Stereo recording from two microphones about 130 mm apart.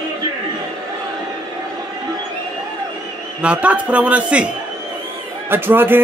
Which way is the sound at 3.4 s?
10° right (ahead or behind).